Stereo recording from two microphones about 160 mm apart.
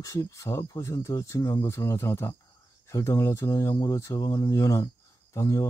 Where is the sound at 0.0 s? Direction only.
20° left (ahead or behind).